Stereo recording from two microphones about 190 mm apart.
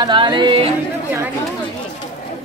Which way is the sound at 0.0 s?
25° right (ahead or behind).